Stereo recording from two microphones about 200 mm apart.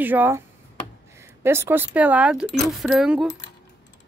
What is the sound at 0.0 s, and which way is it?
Speech, 10° right (ahead or behind).